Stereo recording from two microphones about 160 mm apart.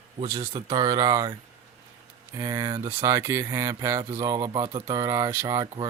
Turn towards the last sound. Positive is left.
turn(degrees=-20)  # may be behind; listen again after turning